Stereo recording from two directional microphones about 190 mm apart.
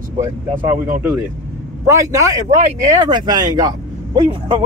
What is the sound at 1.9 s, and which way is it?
Speech, 15° right (ahead or behind).